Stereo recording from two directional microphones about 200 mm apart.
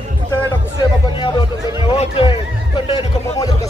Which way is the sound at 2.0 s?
25° left (ahead or behind).